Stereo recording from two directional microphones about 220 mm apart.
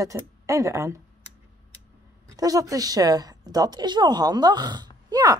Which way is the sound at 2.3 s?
15° right (ahead or behind).